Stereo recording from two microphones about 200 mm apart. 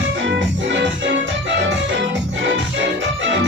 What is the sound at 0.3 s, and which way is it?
Music, 65° right (ahead or behind).